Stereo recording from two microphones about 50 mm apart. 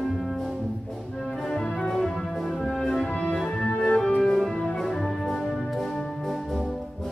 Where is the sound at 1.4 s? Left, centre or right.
Centre.